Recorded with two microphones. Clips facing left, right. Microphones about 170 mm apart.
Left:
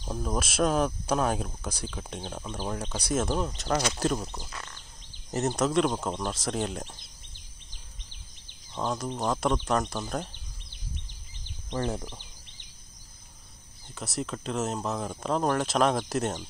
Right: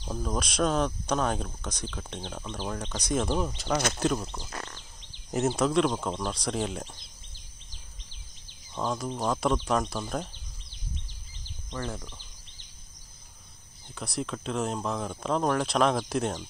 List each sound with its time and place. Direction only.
0.0 s speech: 10° left (ahead or behind)
4.5 s speech: 35° right (ahead or behind)
5.6 s speech: centre (ahead or behind)
7.7 s a sound: 60° left (ahead or behind)
8.7 s speech: centre (ahead or behind)
11.7 s speech: 25° left (ahead or behind)
13.9 s speech: centre (ahead or behind)